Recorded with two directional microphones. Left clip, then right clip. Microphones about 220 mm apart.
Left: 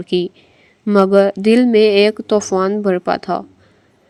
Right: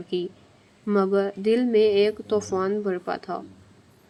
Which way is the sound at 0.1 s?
40° left (ahead or behind).